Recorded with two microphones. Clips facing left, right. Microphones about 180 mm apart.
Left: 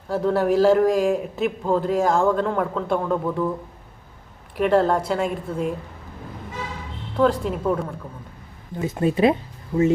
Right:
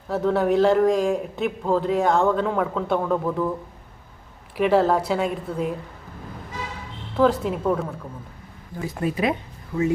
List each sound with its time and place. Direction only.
0.1 s a man's voice: centre (ahead or behind)
4.5 s a man's voice: centre (ahead or behind)
7.2 s a man's voice: centre (ahead or behind)
8.8 s speech: 25° left (ahead or behind)